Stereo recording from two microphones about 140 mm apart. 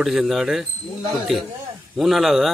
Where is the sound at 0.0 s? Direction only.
Centre (ahead or behind).